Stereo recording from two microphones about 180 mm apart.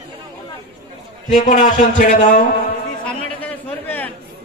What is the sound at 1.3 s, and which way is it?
A man's voice, 45° left (ahead or behind).